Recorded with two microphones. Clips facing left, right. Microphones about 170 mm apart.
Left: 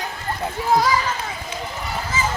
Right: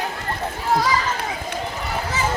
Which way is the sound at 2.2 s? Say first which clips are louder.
Even; 65° right (ahead or behind).